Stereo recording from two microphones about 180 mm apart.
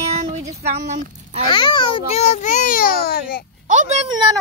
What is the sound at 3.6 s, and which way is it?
Speech, 40° right (ahead or behind).